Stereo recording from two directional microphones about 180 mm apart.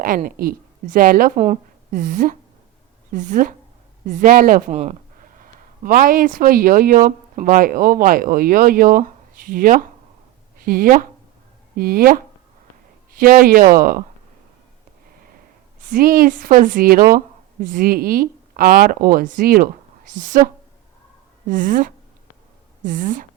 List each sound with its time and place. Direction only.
0.0 s a woman's voice: 50° right (ahead or behind)
15.8 s a woman's voice: 50° right (ahead or behind)
21.4 s a woman's voice: 45° right (ahead or behind)